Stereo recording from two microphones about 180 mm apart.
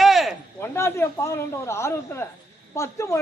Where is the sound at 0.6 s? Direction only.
15° left (ahead or behind).